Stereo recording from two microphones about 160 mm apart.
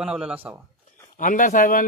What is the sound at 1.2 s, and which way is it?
Speech, 55° left (ahead or behind).